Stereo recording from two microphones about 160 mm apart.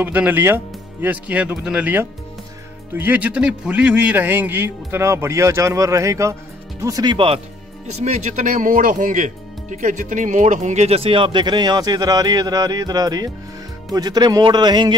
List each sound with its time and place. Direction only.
0.0 s a man's voice: 10° right (ahead or behind); by 15.0 s 25° right (ahead or behind)